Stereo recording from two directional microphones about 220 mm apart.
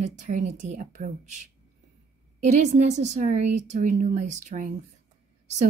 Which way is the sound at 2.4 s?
35° right (ahead or behind).